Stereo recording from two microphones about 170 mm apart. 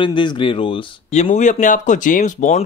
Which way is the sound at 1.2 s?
45° left (ahead or behind).